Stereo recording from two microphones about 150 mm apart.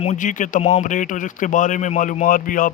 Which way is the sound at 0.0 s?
55° left (ahead or behind).